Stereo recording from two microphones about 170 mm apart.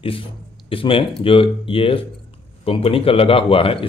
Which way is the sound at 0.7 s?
30° left (ahead or behind).